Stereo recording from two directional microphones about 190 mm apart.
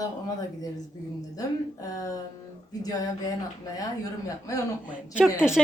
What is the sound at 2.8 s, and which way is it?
Speech, 20° left (ahead or behind).